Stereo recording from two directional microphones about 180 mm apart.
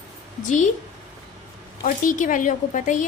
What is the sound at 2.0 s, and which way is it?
A woman's voice, 45° left (ahead or behind).